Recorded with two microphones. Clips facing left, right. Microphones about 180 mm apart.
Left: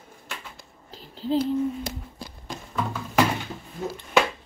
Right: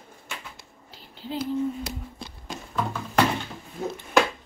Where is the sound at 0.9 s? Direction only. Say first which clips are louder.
Left 8 dB; 40° left (ahead or behind).